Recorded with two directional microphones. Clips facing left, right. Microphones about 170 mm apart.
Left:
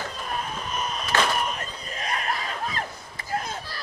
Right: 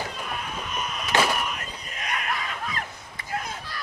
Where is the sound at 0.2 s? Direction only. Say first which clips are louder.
Left 2 dB; 35° left (ahead or behind).